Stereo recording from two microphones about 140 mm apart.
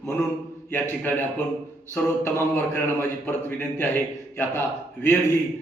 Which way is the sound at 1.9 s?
15° left (ahead or behind).